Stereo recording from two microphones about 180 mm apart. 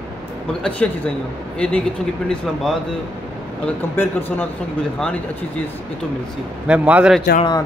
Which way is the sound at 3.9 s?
10° left (ahead or behind).